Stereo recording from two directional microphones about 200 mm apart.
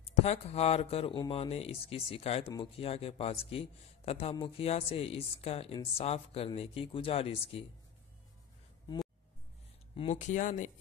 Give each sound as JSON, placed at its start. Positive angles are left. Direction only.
{"t": 0.0, "sound": "a man's voice", "side_deg": 30}
{"t": 9.9, "sound": "speech", "side_deg": 35}